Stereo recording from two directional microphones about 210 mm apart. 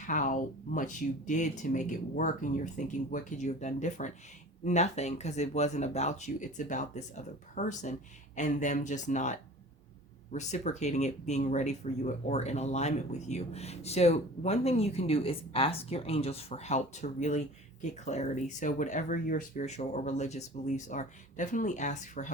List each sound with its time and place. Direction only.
0.1 s speech: 40° left (ahead or behind)